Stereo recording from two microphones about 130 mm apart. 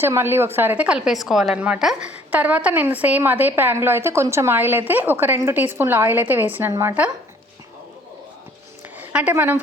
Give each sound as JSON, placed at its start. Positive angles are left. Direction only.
{"t": 0.0, "sound": "a woman's voice", "side_deg": -15}
{"t": 9.0, "sound": "a woman's voice", "side_deg": -10}